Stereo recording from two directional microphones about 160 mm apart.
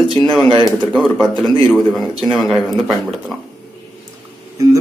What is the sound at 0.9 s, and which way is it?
Speech, centre (ahead or behind).